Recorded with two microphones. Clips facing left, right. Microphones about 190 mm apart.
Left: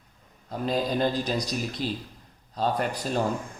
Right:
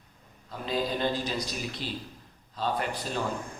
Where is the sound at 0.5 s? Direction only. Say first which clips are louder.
Left 4 dB; 45° left (ahead or behind).